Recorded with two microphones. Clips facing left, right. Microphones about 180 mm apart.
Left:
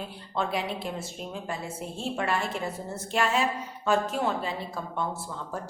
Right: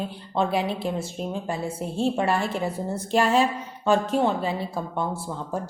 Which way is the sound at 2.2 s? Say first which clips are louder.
Right 5 dB; 30° right (ahead or behind).